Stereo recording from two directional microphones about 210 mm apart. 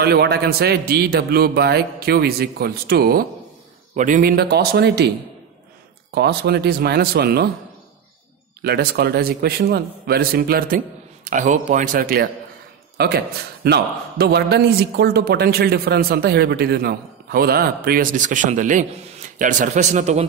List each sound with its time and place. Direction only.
0.0 s a man's voice: 50° right (ahead or behind)
6.1 s a man's voice: 50° right (ahead or behind)
8.6 s a man's voice: 50° right (ahead or behind); by 20.2 s 35° right (ahead or behind)